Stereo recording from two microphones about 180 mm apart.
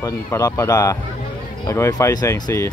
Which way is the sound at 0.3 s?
15° left (ahead or behind).